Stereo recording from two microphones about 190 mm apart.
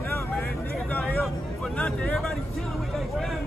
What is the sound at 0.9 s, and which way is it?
Hubbub, 5° left (ahead or behind).